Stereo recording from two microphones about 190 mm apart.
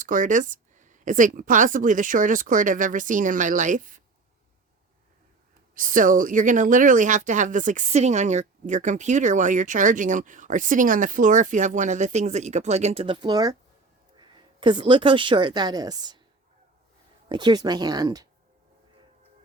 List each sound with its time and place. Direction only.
0.0 s speech: 45° right (ahead or behind)
5.7 s a woman's voice: 45° right (ahead or behind); by 16.2 s 20° right (ahead or behind)
17.2 s speech: 25° right (ahead or behind)